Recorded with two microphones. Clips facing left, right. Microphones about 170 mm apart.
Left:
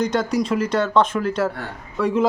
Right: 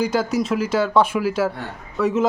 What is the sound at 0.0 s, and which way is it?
Speech, 5° right (ahead or behind).